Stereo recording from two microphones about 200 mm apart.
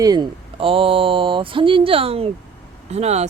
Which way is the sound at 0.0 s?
20° right (ahead or behind).